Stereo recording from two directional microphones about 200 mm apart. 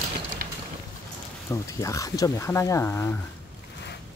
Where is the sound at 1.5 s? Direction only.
15° left (ahead or behind).